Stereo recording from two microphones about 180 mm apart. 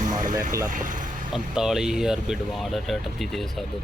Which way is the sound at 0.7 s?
45° right (ahead or behind).